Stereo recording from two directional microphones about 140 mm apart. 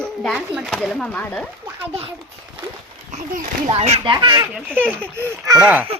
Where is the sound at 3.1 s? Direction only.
55° right (ahead or behind).